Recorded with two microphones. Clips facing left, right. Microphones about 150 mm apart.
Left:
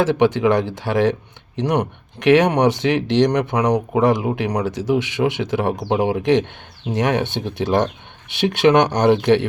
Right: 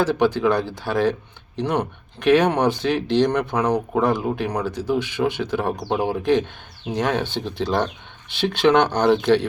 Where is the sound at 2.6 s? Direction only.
90° left.